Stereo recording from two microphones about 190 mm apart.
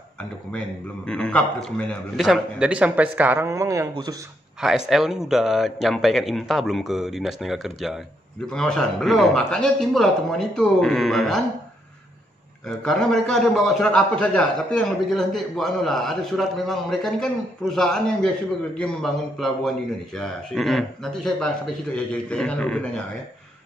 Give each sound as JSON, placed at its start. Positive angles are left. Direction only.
{"t": 1.0, "sound": "a man's voice", "side_deg": 5}
{"t": 4.6, "sound": "a man's voice", "side_deg": 0}
{"t": 12.6, "sound": "a man's voice", "side_deg": 0}